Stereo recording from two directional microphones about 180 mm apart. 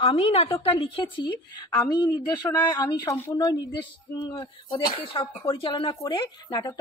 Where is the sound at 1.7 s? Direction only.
20° left (ahead or behind).